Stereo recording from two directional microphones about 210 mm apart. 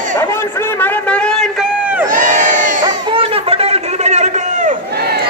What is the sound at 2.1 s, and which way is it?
Crowd, 40° right (ahead or behind).